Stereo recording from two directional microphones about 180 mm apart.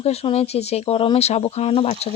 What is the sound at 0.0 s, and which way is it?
Speech, 35° left (ahead or behind).